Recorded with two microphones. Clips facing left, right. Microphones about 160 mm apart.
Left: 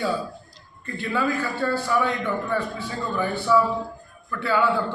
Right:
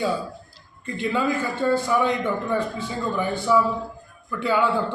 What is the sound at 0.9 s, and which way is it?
A man's voice, 20° right (ahead or behind).